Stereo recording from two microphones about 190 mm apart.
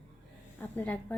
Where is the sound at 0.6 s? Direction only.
10° left (ahead or behind).